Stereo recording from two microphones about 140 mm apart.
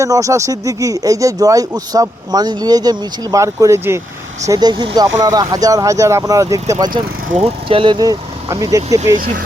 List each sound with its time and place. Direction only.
0.0 s speech: 25° right (ahead or behind)
7.3 s speech: 50° right (ahead or behind); by 9.0 s 25° right (ahead or behind)
9.1 s speech: 90° right